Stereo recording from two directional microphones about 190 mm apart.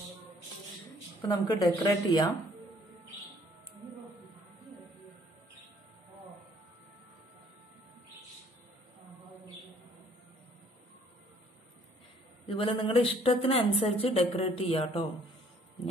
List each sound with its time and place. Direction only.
1.2 s a woman's voice: 20° left (ahead or behind)
12.4 s a woman's voice: 25° left (ahead or behind)